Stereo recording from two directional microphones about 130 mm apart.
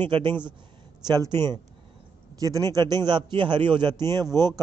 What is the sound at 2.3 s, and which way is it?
A man's voice, 25° right (ahead or behind).